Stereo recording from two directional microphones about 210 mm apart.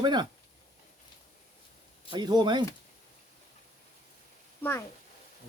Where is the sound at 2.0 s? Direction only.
20° right (ahead or behind).